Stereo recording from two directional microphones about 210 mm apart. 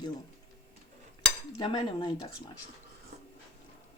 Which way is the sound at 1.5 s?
20° left (ahead or behind).